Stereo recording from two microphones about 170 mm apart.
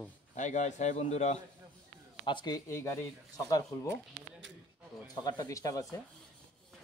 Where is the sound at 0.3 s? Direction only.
45° left (ahead or behind).